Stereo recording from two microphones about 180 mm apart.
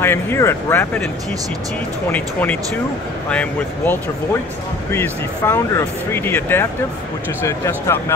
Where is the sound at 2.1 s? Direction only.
10° left (ahead or behind).